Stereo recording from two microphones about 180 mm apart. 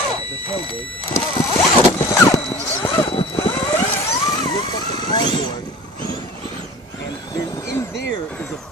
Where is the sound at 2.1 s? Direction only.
15° left (ahead or behind).